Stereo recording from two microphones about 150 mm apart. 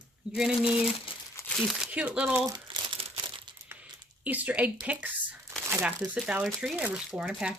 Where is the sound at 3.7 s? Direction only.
10° right (ahead or behind).